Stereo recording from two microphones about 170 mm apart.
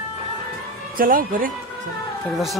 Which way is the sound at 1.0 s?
55° right (ahead or behind).